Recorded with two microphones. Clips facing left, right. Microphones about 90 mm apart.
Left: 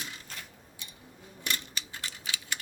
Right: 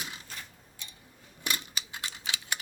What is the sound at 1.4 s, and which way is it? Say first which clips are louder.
Typewriter: right 1 dB; 10° right (ahead or behind).